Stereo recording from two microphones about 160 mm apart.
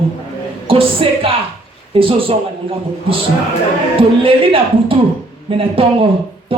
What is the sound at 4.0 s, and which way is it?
A man's voice, 35° right (ahead or behind).